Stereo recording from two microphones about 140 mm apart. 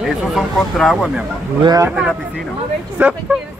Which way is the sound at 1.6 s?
30° right (ahead or behind).